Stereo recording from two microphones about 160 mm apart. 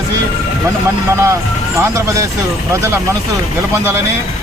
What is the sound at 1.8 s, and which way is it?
Speech, 20° right (ahead or behind).